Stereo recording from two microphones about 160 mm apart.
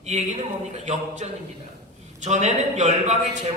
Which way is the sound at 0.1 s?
45° right (ahead or behind).